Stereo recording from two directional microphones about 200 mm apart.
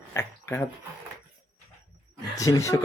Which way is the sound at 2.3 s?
15° left (ahead or behind).